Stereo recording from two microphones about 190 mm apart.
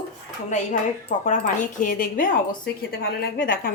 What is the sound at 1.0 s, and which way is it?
Speech, 40° left (ahead or behind).